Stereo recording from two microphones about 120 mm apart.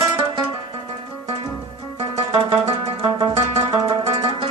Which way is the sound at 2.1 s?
55° right (ahead or behind).